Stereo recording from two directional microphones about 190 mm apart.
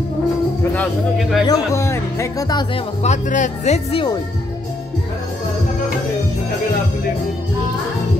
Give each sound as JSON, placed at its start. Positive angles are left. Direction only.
{"t": 0.7, "sound": "speech", "side_deg": 0}
{"t": 1.4, "sound": "speech", "side_deg": 15}
{"t": 3.0, "sound": "speech", "side_deg": 40}